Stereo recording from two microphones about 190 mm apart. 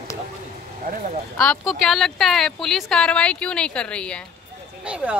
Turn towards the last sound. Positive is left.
turn(degrees=-5)  # may be behind; listen again after turning